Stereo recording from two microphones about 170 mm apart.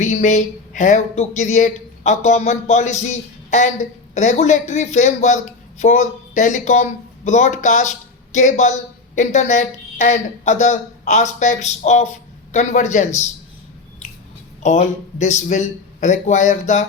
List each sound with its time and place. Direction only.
0.0 s speech: 45° left (ahead or behind)
14.6 s speech: 45° left (ahead or behind)